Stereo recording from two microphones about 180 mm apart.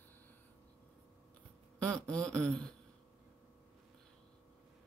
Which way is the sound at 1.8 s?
5° left (ahead or behind).